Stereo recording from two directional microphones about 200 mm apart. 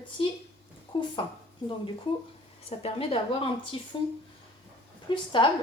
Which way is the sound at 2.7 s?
30° left (ahead or behind).